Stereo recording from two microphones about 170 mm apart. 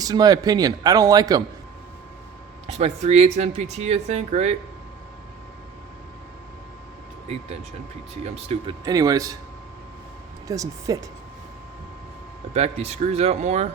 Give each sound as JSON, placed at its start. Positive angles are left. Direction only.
{"t": 0.0, "sound": "a man's voice", "side_deg": -20}
{"t": 2.7, "sound": "speech", "side_deg": -40}
{"t": 8.1, "sound": "speech", "side_deg": -40}
{"t": 8.8, "sound": "a man's voice", "side_deg": -20}
{"t": 10.5, "sound": "a man's voice", "side_deg": -20}
{"t": 12.5, "sound": "speech", "side_deg": -40}